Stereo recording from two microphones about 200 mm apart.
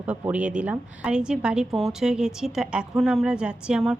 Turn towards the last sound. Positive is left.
turn(degrees=-5)  # may be behind; listen again after turning